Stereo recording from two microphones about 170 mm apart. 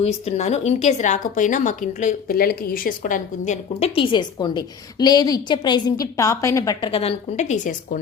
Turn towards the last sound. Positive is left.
turn(degrees=50)  # may be behind; listen again after turning